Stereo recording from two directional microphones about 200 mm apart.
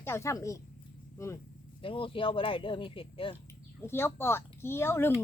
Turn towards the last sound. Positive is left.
turn(degrees=10)  # may be behind; listen again after turning